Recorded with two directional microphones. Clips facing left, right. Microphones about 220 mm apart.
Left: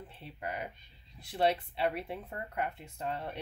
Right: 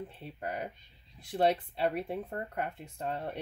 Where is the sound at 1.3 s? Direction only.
45° right (ahead or behind).